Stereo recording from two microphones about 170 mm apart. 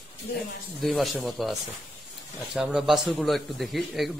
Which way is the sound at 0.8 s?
Centre (ahead or behind).